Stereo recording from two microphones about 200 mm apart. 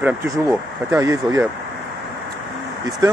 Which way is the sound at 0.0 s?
10° right (ahead or behind).